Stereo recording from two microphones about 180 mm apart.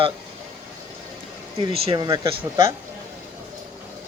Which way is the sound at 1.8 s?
25° right (ahead or behind).